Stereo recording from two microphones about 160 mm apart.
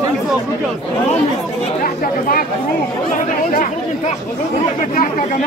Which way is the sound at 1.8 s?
65° left (ahead or behind).